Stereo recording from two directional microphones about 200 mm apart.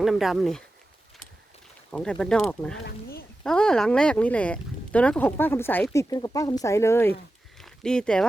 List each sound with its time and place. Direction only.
0.0 s speech: centre (ahead or behind)
1.9 s speech: 5° left (ahead or behind)
2.8 s speech: 50° left (ahead or behind)
3.4 s speech: 5° left (ahead or behind)